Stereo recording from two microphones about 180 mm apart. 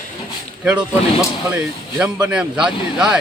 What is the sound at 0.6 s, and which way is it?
Speech, 5° right (ahead or behind).